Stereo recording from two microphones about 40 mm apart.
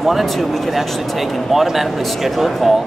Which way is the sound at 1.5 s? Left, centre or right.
Centre.